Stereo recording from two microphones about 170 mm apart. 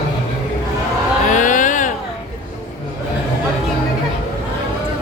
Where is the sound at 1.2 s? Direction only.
50° left (ahead or behind).